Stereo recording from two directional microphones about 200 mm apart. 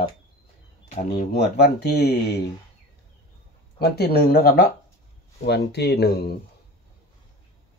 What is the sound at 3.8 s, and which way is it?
Speech, 50° left (ahead or behind).